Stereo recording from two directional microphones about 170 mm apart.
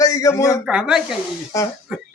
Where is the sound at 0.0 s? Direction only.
20° left (ahead or behind).